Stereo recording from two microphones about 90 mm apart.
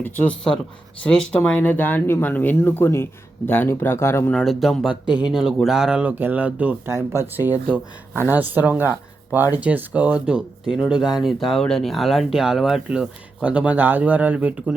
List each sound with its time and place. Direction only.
0.0 s speech: 20° left (ahead or behind)
4.4 s speech: centre (ahead or behind); by 6.7 s 15° right (ahead or behind)
6.8 s speech: 30° right (ahead or behind); by 14.8 s 15° right (ahead or behind)